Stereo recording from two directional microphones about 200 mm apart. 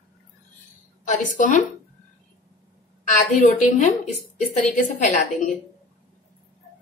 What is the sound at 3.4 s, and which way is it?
A woman's voice, 40° left (ahead or behind).